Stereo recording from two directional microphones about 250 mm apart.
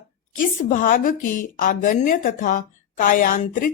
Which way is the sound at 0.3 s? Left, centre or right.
Left.